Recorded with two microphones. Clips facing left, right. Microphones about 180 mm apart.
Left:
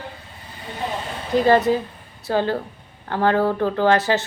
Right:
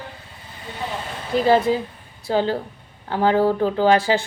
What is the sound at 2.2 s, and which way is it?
A woman's voice, 15° right (ahead or behind).